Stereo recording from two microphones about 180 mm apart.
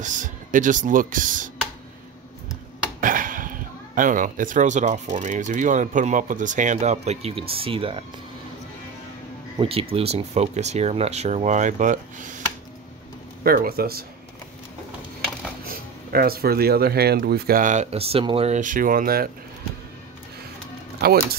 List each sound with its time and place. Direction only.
0.0 s speech: 45° right (ahead or behind)
3.0 s speech: 50° right (ahead or behind); by 8.0 s 30° right (ahead or behind)
9.6 s speech: 30° right (ahead or behind); by 14.0 s 55° right (ahead or behind)
15.6 s speech: 55° right (ahead or behind)
21.0 s speech: 60° right (ahead or behind)